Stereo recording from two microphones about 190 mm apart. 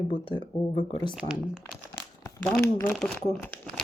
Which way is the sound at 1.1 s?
5° right (ahead or behind).